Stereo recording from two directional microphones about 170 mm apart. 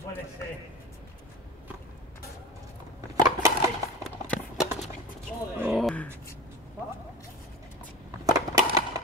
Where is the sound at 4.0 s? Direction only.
Centre (ahead or behind).